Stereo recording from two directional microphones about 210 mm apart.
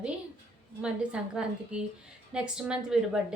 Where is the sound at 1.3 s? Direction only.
5° right (ahead or behind).